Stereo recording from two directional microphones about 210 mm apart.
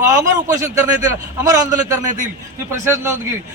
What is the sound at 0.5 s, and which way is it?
A man's voice, 15° right (ahead or behind).